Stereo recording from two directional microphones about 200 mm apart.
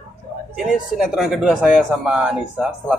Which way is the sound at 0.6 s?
5° right (ahead or behind).